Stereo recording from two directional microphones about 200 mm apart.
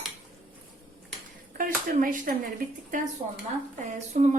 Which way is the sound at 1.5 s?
45° right (ahead or behind).